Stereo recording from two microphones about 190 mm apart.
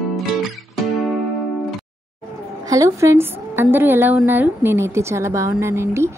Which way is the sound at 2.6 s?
15° right (ahead or behind).